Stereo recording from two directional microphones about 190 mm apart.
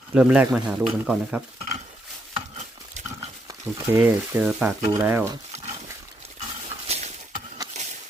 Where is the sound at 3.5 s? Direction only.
15° right (ahead or behind).